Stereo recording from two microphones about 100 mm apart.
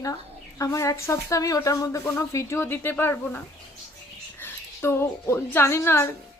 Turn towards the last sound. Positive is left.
turn(degrees=25)  # may be behind; listen again after turning